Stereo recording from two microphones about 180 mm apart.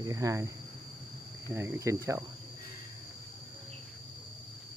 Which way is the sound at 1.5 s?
15° right (ahead or behind).